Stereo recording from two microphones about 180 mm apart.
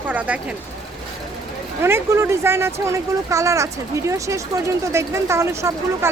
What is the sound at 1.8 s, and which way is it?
Speech, 15° right (ahead or behind).